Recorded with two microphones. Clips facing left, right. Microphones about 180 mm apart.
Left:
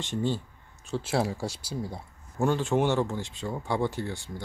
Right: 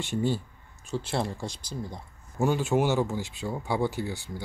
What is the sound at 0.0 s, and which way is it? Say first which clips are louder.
Speech: right 1 dB; 10° right (ahead or behind).